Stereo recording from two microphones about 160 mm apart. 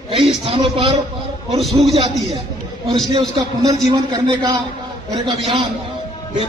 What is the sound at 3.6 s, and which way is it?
A man's voice, 25° right (ahead or behind).